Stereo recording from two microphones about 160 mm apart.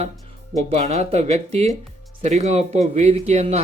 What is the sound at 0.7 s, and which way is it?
Speech, 40° right (ahead or behind).